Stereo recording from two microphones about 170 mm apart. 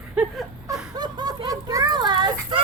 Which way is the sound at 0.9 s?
25° right (ahead or behind).